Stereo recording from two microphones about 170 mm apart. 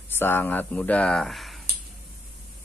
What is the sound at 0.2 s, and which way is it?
Speech, 15° left (ahead or behind).